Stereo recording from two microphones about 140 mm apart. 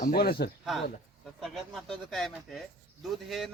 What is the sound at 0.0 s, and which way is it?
Speech, 90° left.